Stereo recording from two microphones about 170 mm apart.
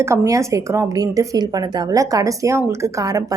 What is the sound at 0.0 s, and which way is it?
Speech, 15° right (ahead or behind).